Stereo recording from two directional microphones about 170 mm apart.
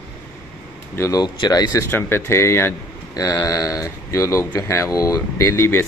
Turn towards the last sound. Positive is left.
turn(degrees=15)  # may be behind; listen again after turning